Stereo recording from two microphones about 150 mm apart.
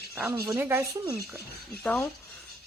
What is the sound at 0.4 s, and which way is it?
Speech, 15° right (ahead or behind).